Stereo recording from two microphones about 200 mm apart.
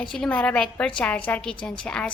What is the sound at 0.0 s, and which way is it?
A woman's voice, 5° left (ahead or behind).